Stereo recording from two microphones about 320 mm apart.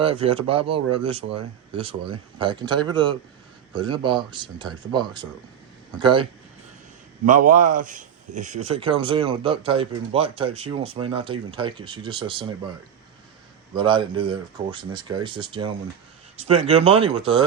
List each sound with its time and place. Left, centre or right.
0.0 s a man's voice: centre
7.3 s a man's voice: right
13.7 s a man's voice: centre